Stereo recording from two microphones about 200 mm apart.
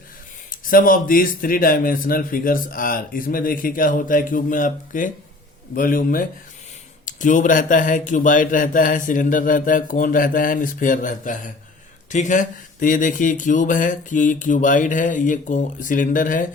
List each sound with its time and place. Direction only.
0.7 s a man's voice: 45° left (ahead or behind)